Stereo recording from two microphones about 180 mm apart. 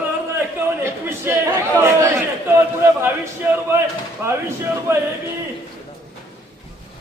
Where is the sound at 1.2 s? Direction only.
15° right (ahead or behind).